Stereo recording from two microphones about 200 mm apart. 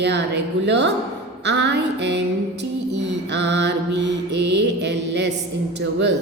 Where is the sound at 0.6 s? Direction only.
60° right (ahead or behind).